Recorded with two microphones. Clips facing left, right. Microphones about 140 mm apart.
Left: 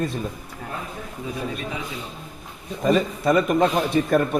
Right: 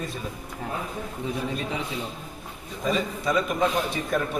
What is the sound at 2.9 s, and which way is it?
A man's voice, 55° left (ahead or behind).